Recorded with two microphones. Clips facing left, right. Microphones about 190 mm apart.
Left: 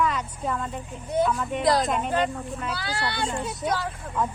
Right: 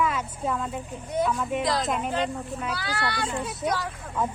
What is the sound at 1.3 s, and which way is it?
Speech, 5° right (ahead or behind).